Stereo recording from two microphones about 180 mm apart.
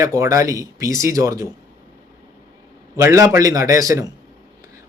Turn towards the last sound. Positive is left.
turn(degrees=-20)  # may be behind; listen again after turning